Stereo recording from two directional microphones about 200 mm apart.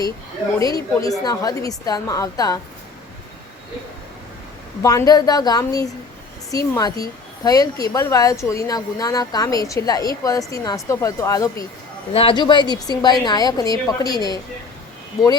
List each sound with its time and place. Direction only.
0.6 s a woman's voice: 15° left (ahead or behind)
4.8 s a woman's voice: 15° left (ahead or behind)